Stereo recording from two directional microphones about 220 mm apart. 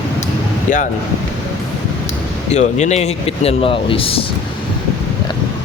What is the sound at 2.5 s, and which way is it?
Speech, 30° left (ahead or behind).